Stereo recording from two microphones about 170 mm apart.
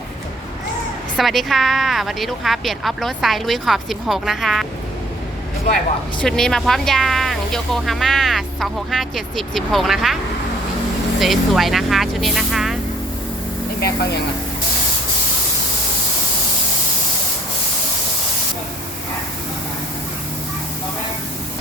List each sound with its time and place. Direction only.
1.1 s speech: centre (ahead or behind)
6.2 s speech: 5° left (ahead or behind)
11.2 s speech: centre (ahead or behind)
13.8 s speech: 70° left (ahead or behind)